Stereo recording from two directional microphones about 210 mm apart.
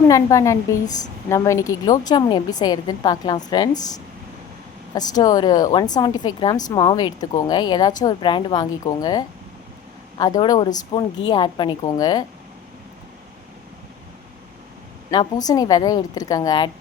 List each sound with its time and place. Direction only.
0.1 s a woman's voice: 15° left (ahead or behind)
15.1 s a woman's voice: 20° left (ahead or behind)